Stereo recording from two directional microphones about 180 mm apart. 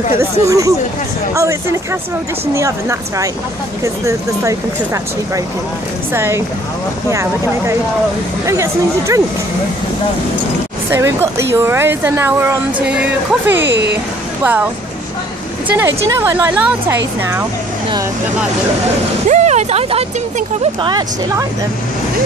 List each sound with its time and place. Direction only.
0.2 s speech: 15° right (ahead or behind)
6.1 s speech: 15° right (ahead or behind)
10.9 s speech: 15° right (ahead or behind)
13.6 s speech: 75° right (ahead or behind)
14.4 s speech: 10° right (ahead or behind)
15.7 s speech: 15° right (ahead or behind)
19.2 s speech: 40° right (ahead or behind)